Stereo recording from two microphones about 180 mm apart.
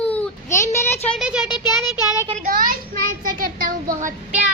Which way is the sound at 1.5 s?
25° left (ahead or behind).